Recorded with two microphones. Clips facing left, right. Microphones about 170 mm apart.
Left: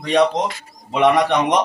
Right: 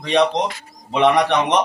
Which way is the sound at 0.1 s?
10° left (ahead or behind).